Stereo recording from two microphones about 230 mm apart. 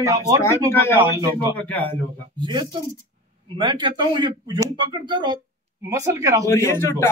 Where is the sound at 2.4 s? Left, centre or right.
Centre.